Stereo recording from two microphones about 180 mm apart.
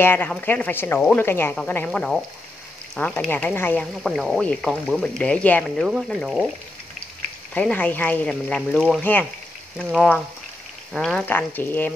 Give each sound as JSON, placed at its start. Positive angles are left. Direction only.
{"t": 0.0, "sound": "speech", "side_deg": 10}
{"t": 7.5, "sound": "speech", "side_deg": 5}